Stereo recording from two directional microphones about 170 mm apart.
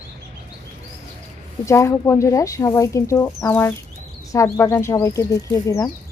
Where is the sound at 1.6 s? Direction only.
15° left (ahead or behind).